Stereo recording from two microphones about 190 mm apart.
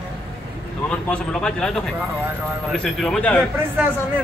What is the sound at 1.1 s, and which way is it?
Speech, 5° left (ahead or behind).